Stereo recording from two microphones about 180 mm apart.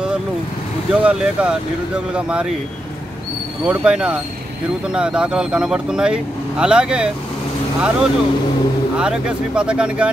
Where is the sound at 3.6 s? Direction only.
5° right (ahead or behind).